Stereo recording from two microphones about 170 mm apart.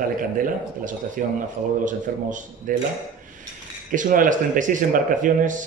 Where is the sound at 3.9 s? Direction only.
50° right (ahead or behind).